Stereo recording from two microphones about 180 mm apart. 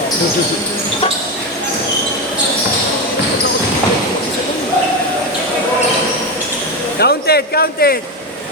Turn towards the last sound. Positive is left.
turn(degrees=60)  # may be behind; listen again after turning